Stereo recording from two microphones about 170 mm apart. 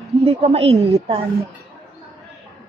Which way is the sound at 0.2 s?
35° right (ahead or behind).